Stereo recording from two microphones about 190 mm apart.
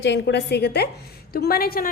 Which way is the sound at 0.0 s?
65° left (ahead or behind).